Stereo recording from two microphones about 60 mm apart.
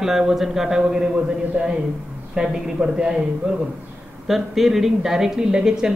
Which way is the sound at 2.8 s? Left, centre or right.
Right.